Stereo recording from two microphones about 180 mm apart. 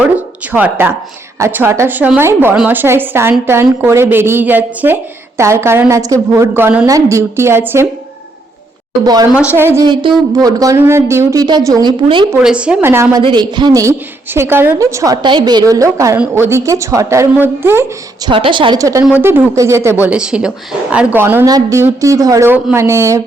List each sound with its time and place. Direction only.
0.5 s a woman's voice: 10° right (ahead or behind)
9.3 s a woman's voice: 10° right (ahead or behind)
9.8 s a woman's voice: 25° right (ahead or behind)
12.4 s a woman's voice: 5° right (ahead or behind)
13.2 s a woman's voice: 25° right (ahead or behind)
18.3 s a woman's voice: 30° right (ahead or behind)